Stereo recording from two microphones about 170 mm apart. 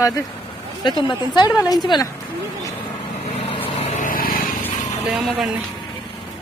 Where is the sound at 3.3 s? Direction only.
30° left (ahead or behind).